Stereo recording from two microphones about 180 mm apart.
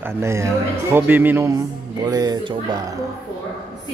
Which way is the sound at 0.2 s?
15° right (ahead or behind).